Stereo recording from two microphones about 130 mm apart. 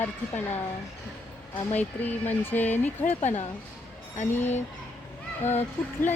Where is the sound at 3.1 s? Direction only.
60° left (ahead or behind).